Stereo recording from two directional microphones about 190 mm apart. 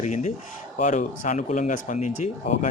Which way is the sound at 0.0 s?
35° left (ahead or behind).